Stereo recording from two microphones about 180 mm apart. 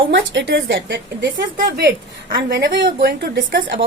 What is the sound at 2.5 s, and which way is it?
A woman's voice, 70° right (ahead or behind).